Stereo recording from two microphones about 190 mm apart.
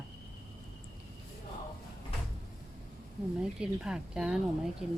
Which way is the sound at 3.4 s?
5° right (ahead or behind).